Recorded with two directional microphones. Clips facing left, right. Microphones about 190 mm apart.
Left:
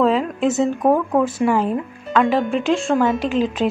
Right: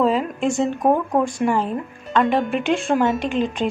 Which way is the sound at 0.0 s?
Centre (ahead or behind).